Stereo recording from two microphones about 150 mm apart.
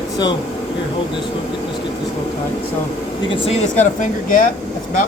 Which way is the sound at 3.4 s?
50° left (ahead or behind).